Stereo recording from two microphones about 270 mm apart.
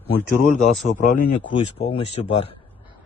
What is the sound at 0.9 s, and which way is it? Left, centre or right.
A man's voice, left.